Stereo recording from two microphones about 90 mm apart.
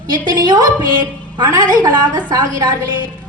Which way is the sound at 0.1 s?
55° right (ahead or behind).